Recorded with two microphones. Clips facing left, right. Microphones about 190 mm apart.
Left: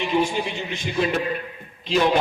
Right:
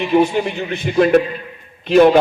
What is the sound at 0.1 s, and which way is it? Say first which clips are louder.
A man's voice: right 9 dB; 60° right (ahead or behind).